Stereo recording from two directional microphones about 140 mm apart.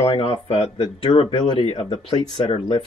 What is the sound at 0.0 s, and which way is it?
Speech, 40° left (ahead or behind).